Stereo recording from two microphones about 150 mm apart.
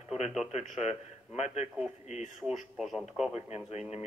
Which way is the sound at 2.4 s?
Centre (ahead or behind).